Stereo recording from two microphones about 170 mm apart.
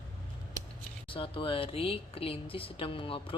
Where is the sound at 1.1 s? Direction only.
30° left (ahead or behind).